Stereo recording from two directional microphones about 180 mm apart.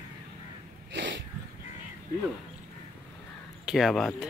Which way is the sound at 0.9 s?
85° right.